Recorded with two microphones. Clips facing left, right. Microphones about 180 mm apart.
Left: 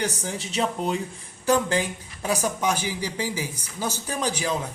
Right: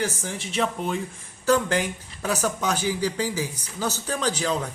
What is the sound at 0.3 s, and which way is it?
Speech, 35° left (ahead or behind).